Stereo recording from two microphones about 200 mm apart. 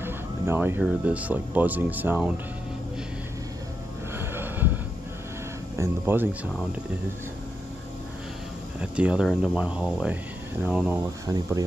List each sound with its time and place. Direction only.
0.0 s speech: 10° right (ahead or behind)
4.2 s a sound: 10° right (ahead or behind)
5.8 s speech: 10° right (ahead or behind)
8.8 s speech: 5° right (ahead or behind)
11.2 s speech: 15° right (ahead or behind)